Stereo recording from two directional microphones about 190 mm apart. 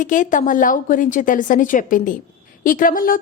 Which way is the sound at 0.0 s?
45° left (ahead or behind).